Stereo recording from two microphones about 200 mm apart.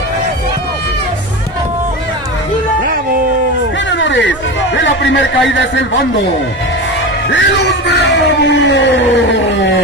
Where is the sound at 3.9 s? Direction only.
65° left (ahead or behind).